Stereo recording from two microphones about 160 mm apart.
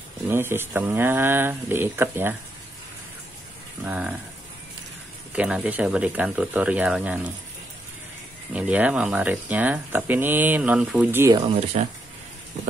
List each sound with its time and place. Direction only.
0.3 s speech: 15° right (ahead or behind)
3.8 s speech: 10° right (ahead or behind)
5.3 s speech: 10° right (ahead or behind)
8.5 s speech: 10° right (ahead or behind)
11.7 s speech: 40° right (ahead or behind)